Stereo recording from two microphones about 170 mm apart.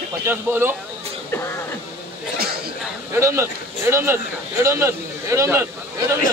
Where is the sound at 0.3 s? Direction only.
15° right (ahead or behind).